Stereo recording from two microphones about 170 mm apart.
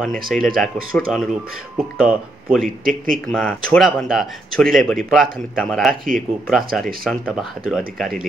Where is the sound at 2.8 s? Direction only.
55° right (ahead or behind).